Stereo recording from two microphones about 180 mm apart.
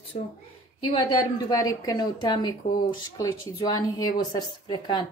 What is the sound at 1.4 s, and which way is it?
Speech, 20° left (ahead or behind).